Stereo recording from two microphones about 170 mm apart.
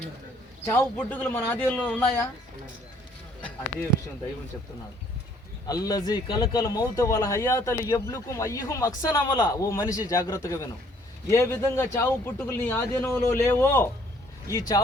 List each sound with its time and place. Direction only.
0.7 s a man's voice: 10° left (ahead or behind)
5.6 s a man's voice: 20° left (ahead or behind)